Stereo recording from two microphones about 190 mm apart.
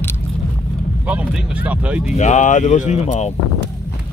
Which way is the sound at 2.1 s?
40° left (ahead or behind).